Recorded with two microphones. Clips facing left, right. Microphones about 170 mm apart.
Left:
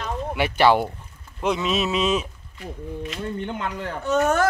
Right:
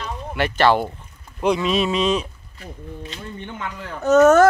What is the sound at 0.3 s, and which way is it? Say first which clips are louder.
Speech: right 1 dB; 10° left (ahead or behind).